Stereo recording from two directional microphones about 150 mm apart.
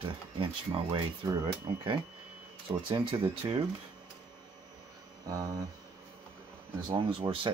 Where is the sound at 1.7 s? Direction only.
35° right (ahead or behind).